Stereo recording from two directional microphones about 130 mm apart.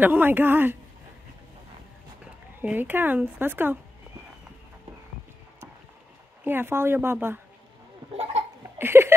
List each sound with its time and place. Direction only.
0.0 s speech: 15° right (ahead or behind)
2.6 s speech: 15° right (ahead or behind)
6.4 s speech: 15° right (ahead or behind)
8.7 s speech: 20° right (ahead or behind)